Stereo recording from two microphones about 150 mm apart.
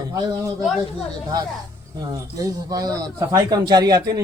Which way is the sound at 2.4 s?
25° right (ahead or behind).